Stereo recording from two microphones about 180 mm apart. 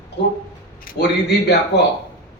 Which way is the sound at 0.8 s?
65° left (ahead or behind).